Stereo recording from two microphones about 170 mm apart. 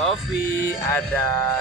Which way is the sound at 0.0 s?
Centre (ahead or behind).